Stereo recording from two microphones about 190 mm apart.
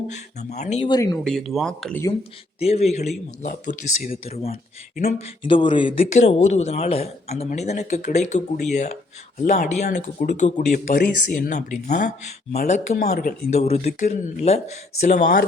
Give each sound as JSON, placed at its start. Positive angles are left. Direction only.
{"t": 0.3, "sound": "speech", "side_deg": 35}
{"t": 0.9, "sound": "speech", "side_deg": 20}
{"t": 1.2, "sound": "speech", "side_deg": 0}
{"t": 2.6, "sound": "speech", "side_deg": 35}
{"t": 5.4, "sound": "speech", "side_deg": 25}
{"t": 13.5, "sound": "speech", "side_deg": 35}